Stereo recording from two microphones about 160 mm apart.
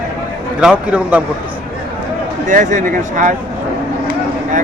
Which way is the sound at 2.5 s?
50° right (ahead or behind).